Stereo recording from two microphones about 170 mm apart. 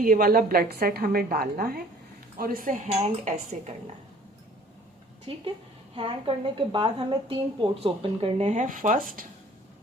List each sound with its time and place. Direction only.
0.0 s a woman's voice: 60° right (ahead or behind); by 3.8 s 40° right (ahead or behind)
5.3 s speech: 30° right (ahead or behind); by 9.2 s 55° right (ahead or behind)